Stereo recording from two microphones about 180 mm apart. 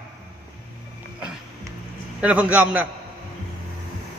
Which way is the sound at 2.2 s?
5° right (ahead or behind).